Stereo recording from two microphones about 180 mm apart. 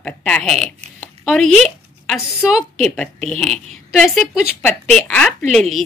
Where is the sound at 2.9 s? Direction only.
5° left (ahead or behind).